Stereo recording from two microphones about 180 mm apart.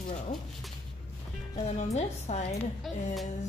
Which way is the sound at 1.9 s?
40° left (ahead or behind).